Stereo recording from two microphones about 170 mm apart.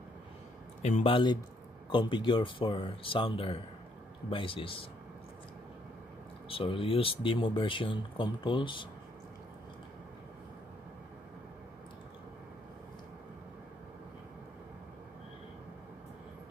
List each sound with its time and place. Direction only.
0.8 s speech: 35° left (ahead or behind)
6.5 s speech: 30° left (ahead or behind)